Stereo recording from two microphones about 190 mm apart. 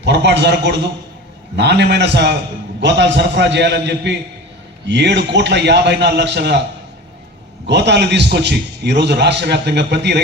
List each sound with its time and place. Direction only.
0.0 s a man's voice: 65° right (ahead or behind)
7.7 s a man's voice: 65° right (ahead or behind)